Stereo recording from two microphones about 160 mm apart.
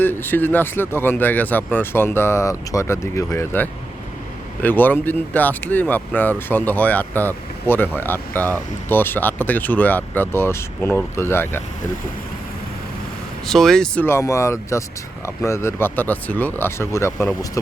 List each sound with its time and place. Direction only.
0.0 s speech: 15° left (ahead or behind)
13.5 s speech: centre (ahead or behind); by 17.2 s 20° left (ahead or behind)